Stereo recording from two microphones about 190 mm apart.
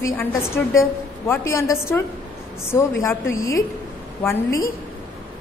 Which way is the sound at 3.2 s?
90° left.